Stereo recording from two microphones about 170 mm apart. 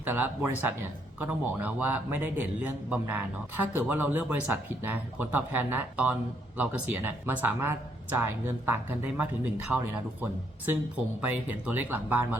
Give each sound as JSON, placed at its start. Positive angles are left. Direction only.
{"t": 0.0, "sound": "speech", "side_deg": -10}